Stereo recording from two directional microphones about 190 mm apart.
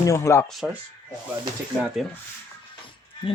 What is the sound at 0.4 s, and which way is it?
Speech, centre (ahead or behind).